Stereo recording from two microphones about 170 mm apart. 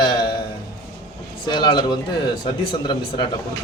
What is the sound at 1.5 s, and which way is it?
A man's voice, 25° left (ahead or behind).